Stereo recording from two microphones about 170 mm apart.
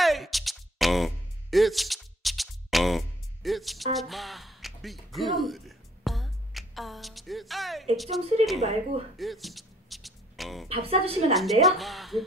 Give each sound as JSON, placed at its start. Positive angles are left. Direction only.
{"t": 0.0, "sound": "music", "side_deg": 0}
{"t": 7.9, "sound": "speech", "side_deg": 0}
{"t": 8.5, "sound": "a woman's voice", "side_deg": -40}
{"t": 9.2, "sound": "music", "side_deg": 0}
{"t": 10.7, "sound": "a woman's voice", "side_deg": -35}
{"t": 11.6, "sound": "speech", "side_deg": 0}